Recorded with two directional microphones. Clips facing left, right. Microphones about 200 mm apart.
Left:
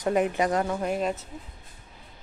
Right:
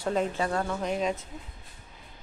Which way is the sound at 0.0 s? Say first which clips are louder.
Left 4 dB; 15° left (ahead or behind).